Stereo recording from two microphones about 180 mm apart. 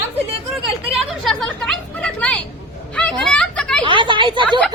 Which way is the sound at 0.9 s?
Centre (ahead or behind).